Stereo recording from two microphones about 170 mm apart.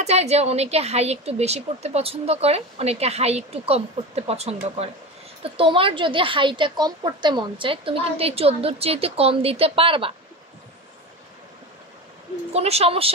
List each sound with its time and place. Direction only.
0.0 s speech: 40° right (ahead or behind)
12.5 s speech: 40° right (ahead or behind)